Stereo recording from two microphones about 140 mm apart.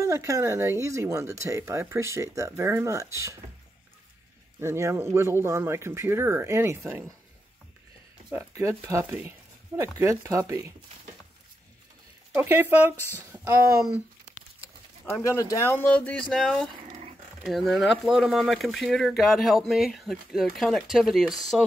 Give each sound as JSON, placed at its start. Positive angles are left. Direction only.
{"t": 0.0, "sound": "speech", "side_deg": -20}
{"t": 4.6, "sound": "speech", "side_deg": -20}
{"t": 8.3, "sound": "speech", "side_deg": -15}
{"t": 12.4, "sound": "speech", "side_deg": -15}
{"t": 15.2, "sound": "speech", "side_deg": 20}